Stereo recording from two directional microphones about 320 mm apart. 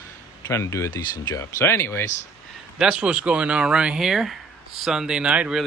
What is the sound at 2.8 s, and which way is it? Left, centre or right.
Speech, centre.